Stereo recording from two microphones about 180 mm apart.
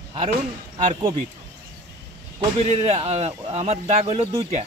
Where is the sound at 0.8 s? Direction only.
35° right (ahead or behind).